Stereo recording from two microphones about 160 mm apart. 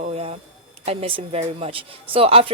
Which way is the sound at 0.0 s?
40° right (ahead or behind).